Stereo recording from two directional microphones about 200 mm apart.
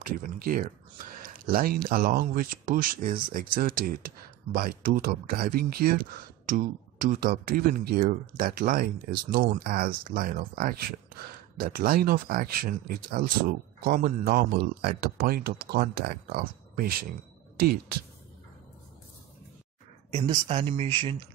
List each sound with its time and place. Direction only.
0.0 s speech: 45° right (ahead or behind)
20.1 s speech: 30° right (ahead or behind)